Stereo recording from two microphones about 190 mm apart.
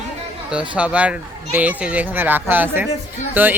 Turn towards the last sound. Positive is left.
turn(degrees=-10)  # may be behind; listen again after turning